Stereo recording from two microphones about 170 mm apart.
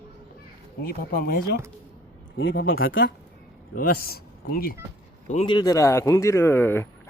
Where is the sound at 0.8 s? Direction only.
60° left (ahead or behind).